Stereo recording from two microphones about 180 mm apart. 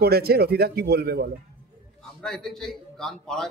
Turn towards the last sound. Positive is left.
turn(degrees=5)  # may be behind; listen again after turning